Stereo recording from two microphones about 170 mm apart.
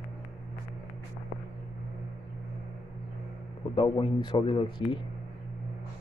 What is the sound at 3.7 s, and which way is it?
Speech, 30° left (ahead or behind).